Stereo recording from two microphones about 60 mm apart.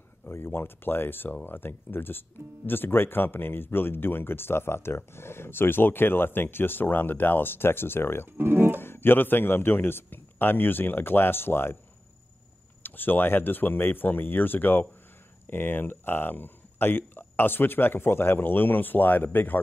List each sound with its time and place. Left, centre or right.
0.3 s speech: left
8.3 s speech: right
8.8 s speech: left
12.8 s speech: left